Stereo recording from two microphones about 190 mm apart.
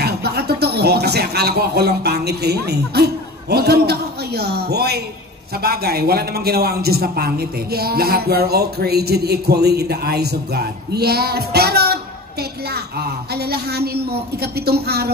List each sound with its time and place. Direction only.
0.0 s a man's voice: 60° right (ahead or behind)